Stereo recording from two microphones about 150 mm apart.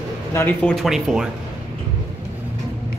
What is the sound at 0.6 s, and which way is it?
Speech, centre (ahead or behind).